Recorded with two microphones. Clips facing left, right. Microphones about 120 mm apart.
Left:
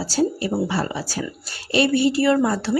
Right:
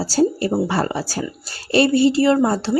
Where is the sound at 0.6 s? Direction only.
50° right (ahead or behind).